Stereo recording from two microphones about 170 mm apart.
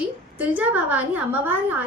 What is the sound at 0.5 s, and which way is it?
A woman's voice, 10° right (ahead or behind).